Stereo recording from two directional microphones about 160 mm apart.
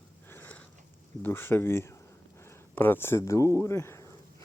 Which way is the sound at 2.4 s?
15° left (ahead or behind).